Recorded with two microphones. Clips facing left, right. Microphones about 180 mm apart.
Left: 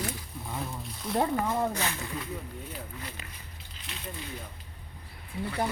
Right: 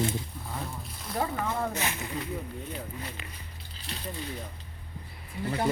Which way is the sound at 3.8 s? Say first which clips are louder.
Right 3 dB; 35° right (ahead or behind).